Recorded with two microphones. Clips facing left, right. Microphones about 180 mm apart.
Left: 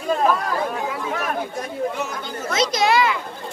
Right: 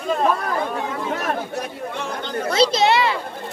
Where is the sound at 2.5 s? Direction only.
30° right (ahead or behind).